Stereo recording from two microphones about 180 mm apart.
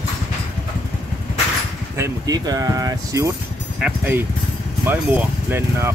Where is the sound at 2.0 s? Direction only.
20° right (ahead or behind).